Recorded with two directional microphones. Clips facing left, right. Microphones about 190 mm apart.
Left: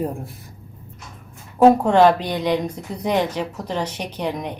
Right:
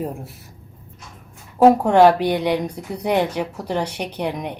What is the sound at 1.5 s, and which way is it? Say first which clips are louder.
A woman's voice: right 1 dB; 10° right (ahead or behind).